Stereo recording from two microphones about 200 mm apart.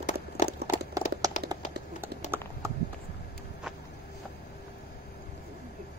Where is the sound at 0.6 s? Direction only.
50° right (ahead or behind).